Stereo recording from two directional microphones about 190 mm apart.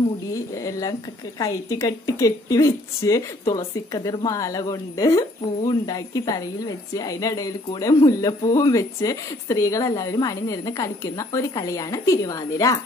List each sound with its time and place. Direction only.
0.3 s a woman's voice: 15° left (ahead or behind)